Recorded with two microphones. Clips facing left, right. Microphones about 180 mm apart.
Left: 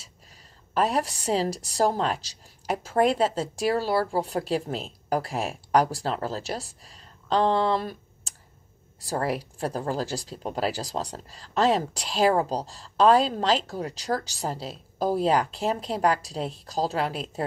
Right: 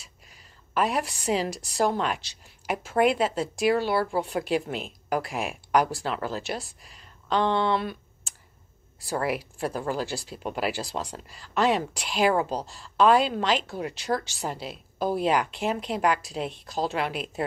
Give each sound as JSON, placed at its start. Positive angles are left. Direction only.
{"t": 0.7, "sound": "a woman's voice", "side_deg": 35}